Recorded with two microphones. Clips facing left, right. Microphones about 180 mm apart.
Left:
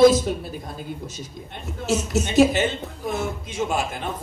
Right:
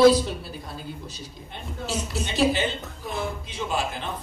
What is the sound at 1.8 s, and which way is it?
A woman's voice, 45° left (ahead or behind).